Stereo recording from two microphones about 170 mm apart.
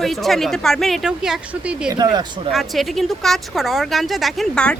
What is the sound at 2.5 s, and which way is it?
Speech, centre (ahead or behind).